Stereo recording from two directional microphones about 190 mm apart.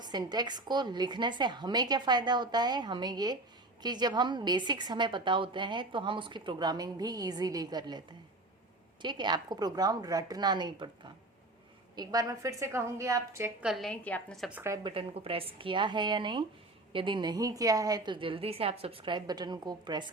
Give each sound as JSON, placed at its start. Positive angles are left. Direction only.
{"t": 0.0, "sound": "a woman's voice", "side_deg": -20}
{"t": 11.9, "sound": "a woman's voice", "side_deg": -20}
{"t": 13.7, "sound": "a woman's voice", "side_deg": 0}
{"t": 14.6, "sound": "a woman's voice", "side_deg": -15}
{"t": 14.9, "sound": "a woman's voice", "side_deg": -30}